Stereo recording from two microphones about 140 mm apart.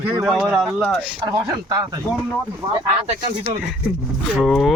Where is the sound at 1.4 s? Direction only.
25° right (ahead or behind).